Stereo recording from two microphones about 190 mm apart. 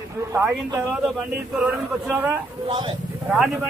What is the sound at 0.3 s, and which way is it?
A man's voice, 15° right (ahead or behind).